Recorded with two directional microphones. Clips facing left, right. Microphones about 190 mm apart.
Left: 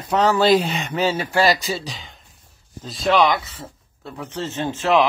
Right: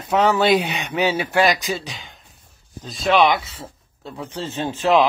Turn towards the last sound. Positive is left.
turn(degrees=-15)  # may be behind; listen again after turning